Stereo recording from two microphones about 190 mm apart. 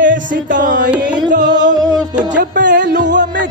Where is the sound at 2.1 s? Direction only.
40° right (ahead or behind).